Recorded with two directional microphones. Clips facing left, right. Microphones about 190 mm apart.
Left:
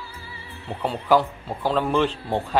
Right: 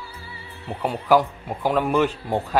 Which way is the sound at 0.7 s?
10° right (ahead or behind).